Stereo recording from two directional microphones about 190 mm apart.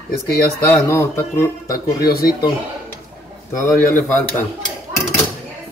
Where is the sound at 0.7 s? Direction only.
15° left (ahead or behind).